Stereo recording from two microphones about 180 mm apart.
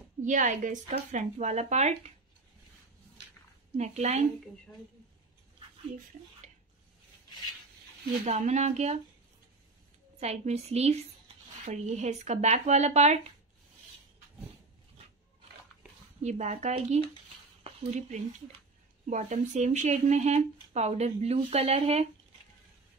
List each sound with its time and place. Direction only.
0.2 s speech: 45° right (ahead or behind)
3.7 s speech: 40° right (ahead or behind)
8.1 s speech: 40° right (ahead or behind)
10.1 s speech: 35° right (ahead or behind)
16.2 s speech: 40° right (ahead or behind)
19.0 s speech: 45° right (ahead or behind)